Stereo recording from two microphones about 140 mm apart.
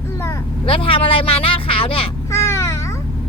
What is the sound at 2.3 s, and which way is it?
Babbling, 20° left (ahead or behind).